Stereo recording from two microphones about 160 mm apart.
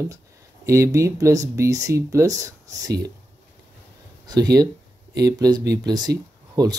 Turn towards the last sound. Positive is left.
turn(degrees=-25)  # may be behind; listen again after turning